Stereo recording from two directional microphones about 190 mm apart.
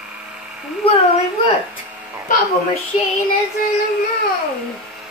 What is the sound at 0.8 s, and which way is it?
Speech, 35° left (ahead or behind).